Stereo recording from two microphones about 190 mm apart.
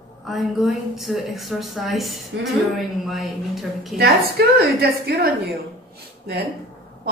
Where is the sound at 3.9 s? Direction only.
55° right (ahead or behind).